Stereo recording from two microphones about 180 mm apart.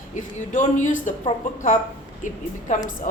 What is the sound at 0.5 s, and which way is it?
Speech, 45° left (ahead or behind).